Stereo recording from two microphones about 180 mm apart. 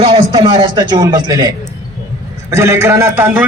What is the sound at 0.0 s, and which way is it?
A man's voice, 30° right (ahead or behind).